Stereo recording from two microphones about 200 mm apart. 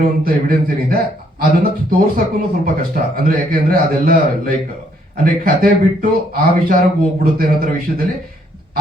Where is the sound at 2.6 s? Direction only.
45° right (ahead or behind).